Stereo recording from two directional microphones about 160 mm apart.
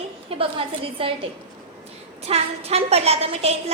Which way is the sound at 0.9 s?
35° right (ahead or behind).